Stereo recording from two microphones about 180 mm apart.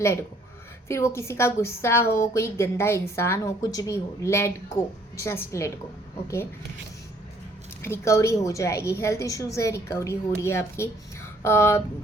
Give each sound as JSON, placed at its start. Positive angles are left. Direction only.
{"t": 0.0, "sound": "a woman's voice", "side_deg": 15}
{"t": 7.8, "sound": "a woman's voice", "side_deg": 15}